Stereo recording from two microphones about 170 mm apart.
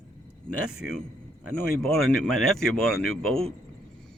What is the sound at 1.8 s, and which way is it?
A man's voice, 5° left (ahead or behind).